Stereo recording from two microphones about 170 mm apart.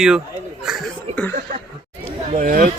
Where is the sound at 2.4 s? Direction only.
50° right (ahead or behind).